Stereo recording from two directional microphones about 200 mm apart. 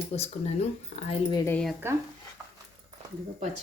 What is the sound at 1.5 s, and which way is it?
Speech, 5° left (ahead or behind).